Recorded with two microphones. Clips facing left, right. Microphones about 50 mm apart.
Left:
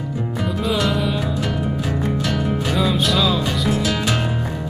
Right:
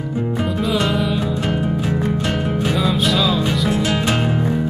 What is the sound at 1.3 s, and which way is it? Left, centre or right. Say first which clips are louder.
Music: right 3 dB; centre.